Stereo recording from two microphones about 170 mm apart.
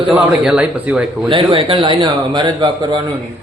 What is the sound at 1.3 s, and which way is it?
Speech, 30° right (ahead or behind).